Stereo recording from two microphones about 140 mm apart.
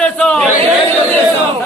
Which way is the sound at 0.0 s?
10° left (ahead or behind).